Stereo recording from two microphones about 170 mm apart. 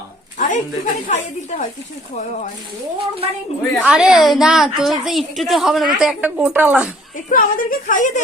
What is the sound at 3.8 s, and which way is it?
A woman's voice, 5° right (ahead or behind).